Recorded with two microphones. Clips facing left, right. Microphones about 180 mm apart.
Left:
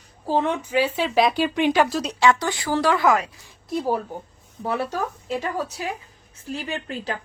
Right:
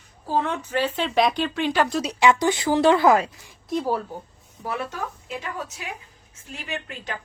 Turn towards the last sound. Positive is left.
turn(degrees=35)  # may be behind; listen again after turning